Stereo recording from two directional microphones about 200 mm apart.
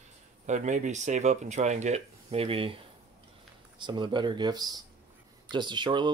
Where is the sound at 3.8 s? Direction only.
20° right (ahead or behind).